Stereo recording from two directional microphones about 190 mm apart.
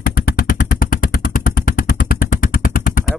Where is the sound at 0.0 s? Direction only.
50° left (ahead or behind).